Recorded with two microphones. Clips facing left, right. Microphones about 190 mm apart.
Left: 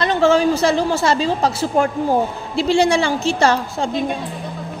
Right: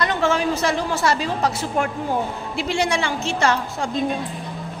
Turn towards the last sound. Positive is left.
turn(degrees=30)  # may be behind; listen again after turning